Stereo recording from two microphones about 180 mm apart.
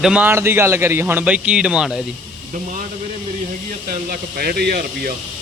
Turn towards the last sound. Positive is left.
turn(degrees=-60)  # may be behind; listen again after turning